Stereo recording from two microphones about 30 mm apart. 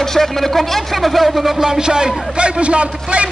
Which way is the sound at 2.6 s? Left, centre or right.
Right.